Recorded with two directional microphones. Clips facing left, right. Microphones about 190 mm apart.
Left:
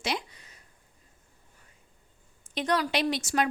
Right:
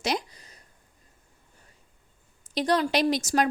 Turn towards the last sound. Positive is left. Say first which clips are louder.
# right 4 dB
turn(degrees=-40)  # may be behind; listen again after turning